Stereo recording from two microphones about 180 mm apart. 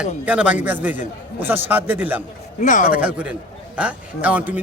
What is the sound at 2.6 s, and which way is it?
Speech, 45° left (ahead or behind).